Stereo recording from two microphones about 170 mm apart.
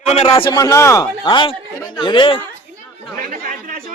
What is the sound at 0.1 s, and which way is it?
Speech, 35° left (ahead or behind).